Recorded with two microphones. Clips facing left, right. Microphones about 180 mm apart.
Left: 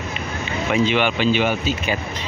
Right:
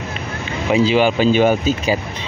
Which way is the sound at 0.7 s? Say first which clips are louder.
Right 5 dB; 35° right (ahead or behind).